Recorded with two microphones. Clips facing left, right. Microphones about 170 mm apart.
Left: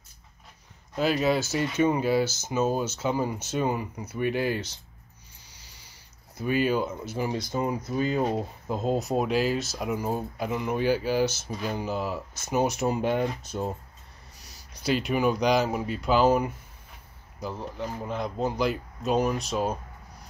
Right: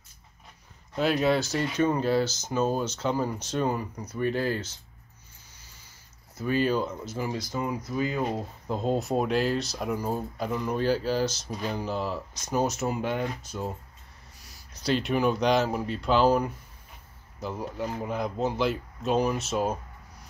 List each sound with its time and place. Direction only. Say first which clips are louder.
0.9 s speech: even; centre (ahead or behind)
6.3 s speech: left 1 dB; 10° left (ahead or behind)
8.3 s speech: left 2 dB; 5° left (ahead or behind); by 13.7 s 25° left (ahead or behind)
14.9 s speech: even; 5° left (ahead or behind)